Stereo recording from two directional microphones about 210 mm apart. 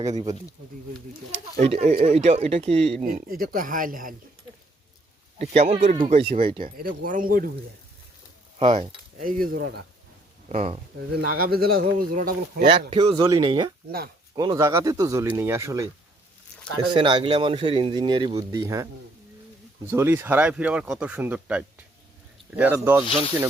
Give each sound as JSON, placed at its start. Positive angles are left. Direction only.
{"t": 1.6, "sound": "speech", "side_deg": -30}
{"t": 3.1, "sound": "speech", "side_deg": -45}
{"t": 5.4, "sound": "speech", "side_deg": -35}
{"t": 6.6, "sound": "speech", "side_deg": -40}
{"t": 8.5, "sound": "speech", "side_deg": -25}
{"t": 9.1, "sound": "speech", "side_deg": -40}
{"t": 10.5, "sound": "speech", "side_deg": -35}
{"t": 10.9, "sound": "speech", "side_deg": -50}
{"t": 12.9, "sound": "speech", "side_deg": -25}
{"t": 16.9, "sound": "speech", "side_deg": -25}
{"t": 19.9, "sound": "speech", "side_deg": -10}